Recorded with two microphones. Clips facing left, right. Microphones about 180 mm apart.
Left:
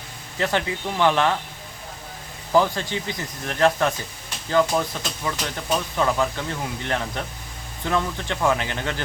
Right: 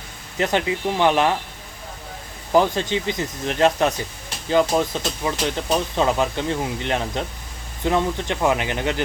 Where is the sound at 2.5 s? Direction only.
20° right (ahead or behind).